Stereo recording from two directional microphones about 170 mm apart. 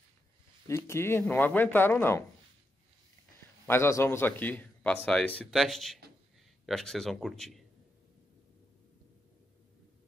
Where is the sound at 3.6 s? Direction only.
15° left (ahead or behind).